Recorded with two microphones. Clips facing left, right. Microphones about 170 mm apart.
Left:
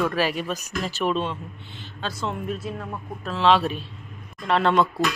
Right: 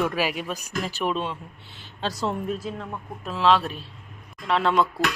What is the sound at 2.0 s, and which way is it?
Speech, 40° right (ahead or behind).